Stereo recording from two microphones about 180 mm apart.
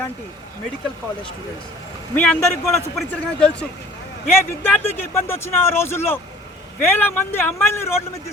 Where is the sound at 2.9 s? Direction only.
5° left (ahead or behind).